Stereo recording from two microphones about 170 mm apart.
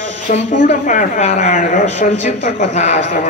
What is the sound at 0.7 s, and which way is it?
Speech, 45° left (ahead or behind).